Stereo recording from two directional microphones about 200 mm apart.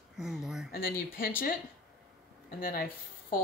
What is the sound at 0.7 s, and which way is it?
Speech, 45° left (ahead or behind).